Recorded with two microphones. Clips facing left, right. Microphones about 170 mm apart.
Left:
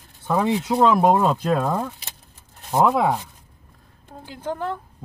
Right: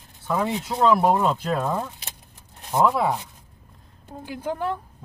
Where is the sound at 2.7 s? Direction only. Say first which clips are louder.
Left 2 dB; 20° left (ahead or behind).